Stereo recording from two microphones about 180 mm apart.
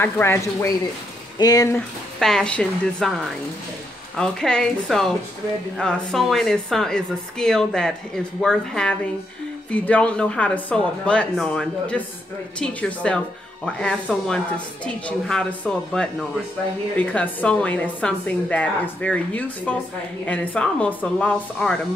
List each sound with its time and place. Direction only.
0.0 s a woman's voice: 15° left (ahead or behind)
1.8 s speech: 5° left (ahead or behind)
4.2 s a woman's voice: 5° left (ahead or behind)